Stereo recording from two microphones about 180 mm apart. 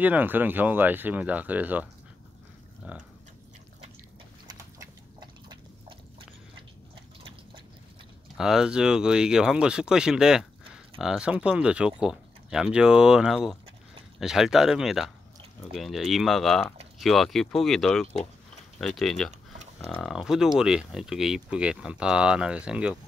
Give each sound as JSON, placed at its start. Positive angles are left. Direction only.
{"t": 0.0, "sound": "speech", "side_deg": -10}
{"t": 4.5, "sound": "pig", "side_deg": -25}
{"t": 8.4, "sound": "speech", "side_deg": -5}